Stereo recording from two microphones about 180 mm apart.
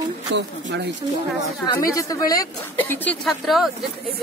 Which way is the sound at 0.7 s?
80° right.